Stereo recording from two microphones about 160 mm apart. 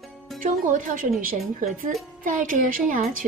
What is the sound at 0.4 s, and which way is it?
Speech, 55° right (ahead or behind).